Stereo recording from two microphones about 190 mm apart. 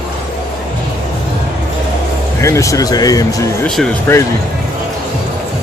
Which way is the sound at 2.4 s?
15° left (ahead or behind).